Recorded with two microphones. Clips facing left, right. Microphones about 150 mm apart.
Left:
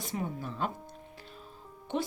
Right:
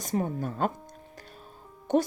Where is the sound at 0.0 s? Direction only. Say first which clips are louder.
Right 6 dB; 45° right (ahead or behind).